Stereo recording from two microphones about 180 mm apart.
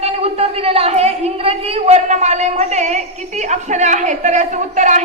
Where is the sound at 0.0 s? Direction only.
35° right (ahead or behind).